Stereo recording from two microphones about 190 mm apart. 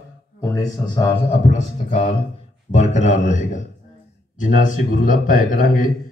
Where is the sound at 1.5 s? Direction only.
35° left (ahead or behind).